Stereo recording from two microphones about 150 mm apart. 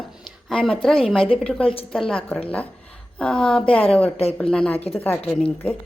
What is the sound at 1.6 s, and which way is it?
Speech, 40° left (ahead or behind).